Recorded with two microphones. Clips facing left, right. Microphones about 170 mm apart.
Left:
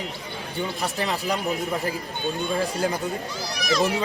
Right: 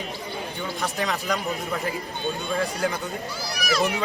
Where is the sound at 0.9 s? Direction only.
30° left (ahead or behind).